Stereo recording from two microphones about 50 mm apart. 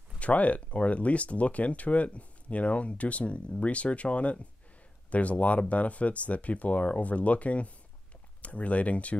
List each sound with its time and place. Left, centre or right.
0.2 s speech: left